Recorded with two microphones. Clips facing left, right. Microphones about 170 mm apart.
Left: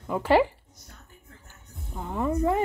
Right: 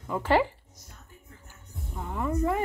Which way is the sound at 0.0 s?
15° left (ahead or behind).